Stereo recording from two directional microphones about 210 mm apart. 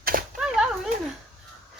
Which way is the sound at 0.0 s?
45° right (ahead or behind).